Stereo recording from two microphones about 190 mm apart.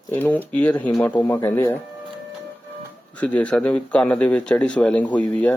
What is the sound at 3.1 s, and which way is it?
Speech, 5° left (ahead or behind).